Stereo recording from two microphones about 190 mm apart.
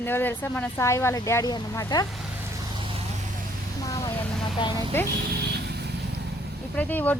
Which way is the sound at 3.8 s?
15° left (ahead or behind).